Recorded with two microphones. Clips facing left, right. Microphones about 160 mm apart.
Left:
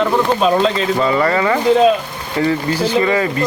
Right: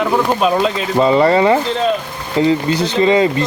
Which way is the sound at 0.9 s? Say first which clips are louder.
Right 4 dB; 25° right (ahead or behind).